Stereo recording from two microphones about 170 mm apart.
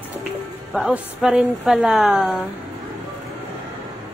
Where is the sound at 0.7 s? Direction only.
Centre (ahead or behind).